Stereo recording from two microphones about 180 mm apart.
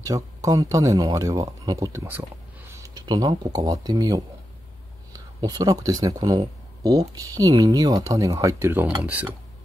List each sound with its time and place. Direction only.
0.0 s speech: 20° right (ahead or behind)